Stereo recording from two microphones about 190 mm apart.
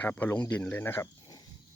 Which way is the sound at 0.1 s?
10° left (ahead or behind).